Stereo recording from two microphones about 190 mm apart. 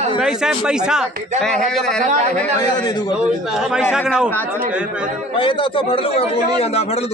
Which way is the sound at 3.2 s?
5° right (ahead or behind).